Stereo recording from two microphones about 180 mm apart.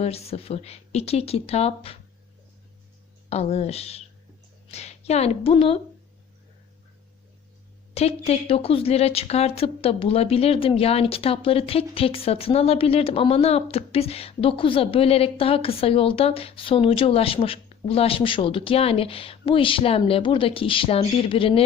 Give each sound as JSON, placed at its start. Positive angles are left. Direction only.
{"t": 0.0, "sound": "a woman's voice", "side_deg": 35}
{"t": 3.2, "sound": "a woman's voice", "side_deg": 35}
{"t": 7.9, "sound": "a woman's voice", "side_deg": 35}